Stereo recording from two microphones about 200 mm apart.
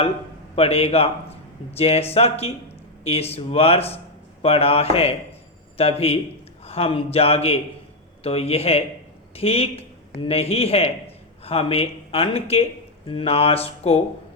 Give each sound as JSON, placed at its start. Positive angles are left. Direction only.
{"t": 0.5, "sound": "a man's voice", "side_deg": 30}